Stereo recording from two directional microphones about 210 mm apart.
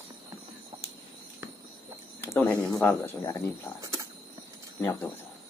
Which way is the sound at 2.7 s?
10° left (ahead or behind).